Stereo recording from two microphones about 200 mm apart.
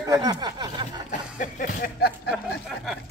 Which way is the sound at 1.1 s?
40° left (ahead or behind).